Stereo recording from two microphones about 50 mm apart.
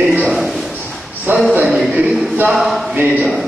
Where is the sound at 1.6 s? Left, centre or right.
Centre.